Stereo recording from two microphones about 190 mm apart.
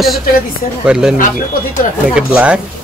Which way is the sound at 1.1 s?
45° left (ahead or behind).